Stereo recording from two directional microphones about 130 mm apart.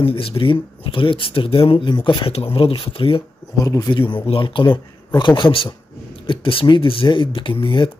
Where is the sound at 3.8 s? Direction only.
40° left (ahead or behind).